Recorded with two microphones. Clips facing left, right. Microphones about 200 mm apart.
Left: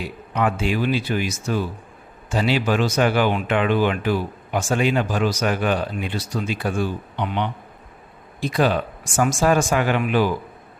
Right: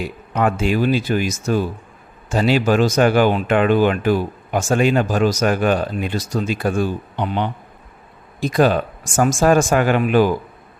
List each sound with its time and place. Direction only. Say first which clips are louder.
0.3 s speech: right 4 dB; 45° right (ahead or behind)